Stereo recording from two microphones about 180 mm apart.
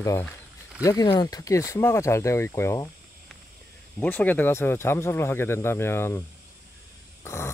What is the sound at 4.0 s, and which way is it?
Speech, 10° left (ahead or behind).